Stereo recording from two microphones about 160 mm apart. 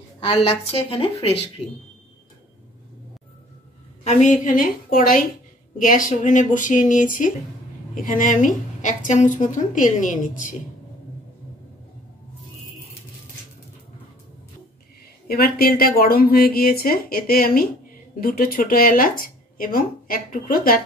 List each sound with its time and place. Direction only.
0.2 s a woman's voice: 35° left (ahead or behind)
4.0 s a woman's voice: 45° left (ahead or behind)
15.2 s speech: 70° left (ahead or behind)